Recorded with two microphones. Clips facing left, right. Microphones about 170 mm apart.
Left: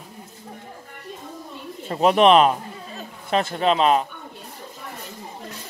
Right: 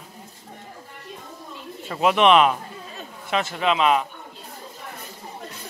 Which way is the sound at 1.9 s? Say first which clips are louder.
Left 2 dB; 35° left (ahead or behind).